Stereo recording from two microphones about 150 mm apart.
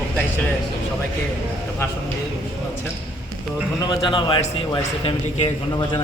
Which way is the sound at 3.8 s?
30° left (ahead or behind).